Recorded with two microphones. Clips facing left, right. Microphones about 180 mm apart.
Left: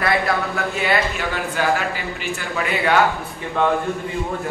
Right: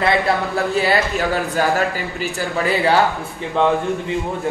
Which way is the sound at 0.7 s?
35° right (ahead or behind).